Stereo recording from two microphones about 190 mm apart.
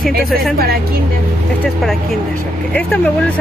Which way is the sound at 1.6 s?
Centre (ahead or behind).